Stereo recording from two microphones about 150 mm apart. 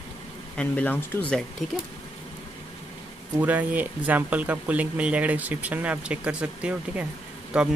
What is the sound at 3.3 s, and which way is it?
Speech, 10° right (ahead or behind).